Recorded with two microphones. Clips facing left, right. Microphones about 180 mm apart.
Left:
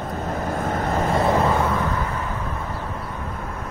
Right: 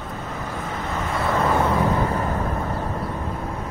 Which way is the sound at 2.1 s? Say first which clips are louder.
Right 4 dB; 40° right (ahead or behind).